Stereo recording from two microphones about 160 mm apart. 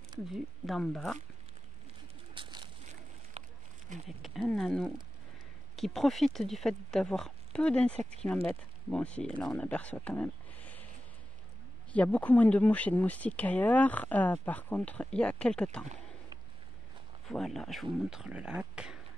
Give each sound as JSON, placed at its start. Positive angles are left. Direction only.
{"t": 0.3, "sound": "speech", "side_deg": 0}
{"t": 2.3, "sound": "a sound", "side_deg": -30}
{"t": 3.4, "sound": "a sound", "side_deg": -40}
{"t": 4.2, "sound": "speech", "side_deg": 0}
{"t": 11.9, "sound": "speech", "side_deg": 10}
{"t": 17.3, "sound": "speech", "side_deg": 0}